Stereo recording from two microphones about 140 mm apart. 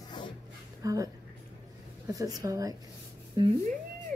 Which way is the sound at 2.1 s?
25° right (ahead or behind).